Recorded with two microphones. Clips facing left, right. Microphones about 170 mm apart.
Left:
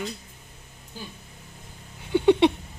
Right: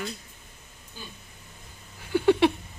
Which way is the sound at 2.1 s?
20° left (ahead or behind).